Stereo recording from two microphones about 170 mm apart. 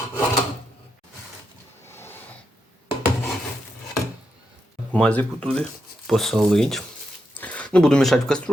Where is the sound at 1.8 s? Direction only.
15° left (ahead or behind).